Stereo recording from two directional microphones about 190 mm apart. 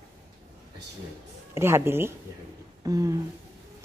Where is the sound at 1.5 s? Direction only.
15° right (ahead or behind).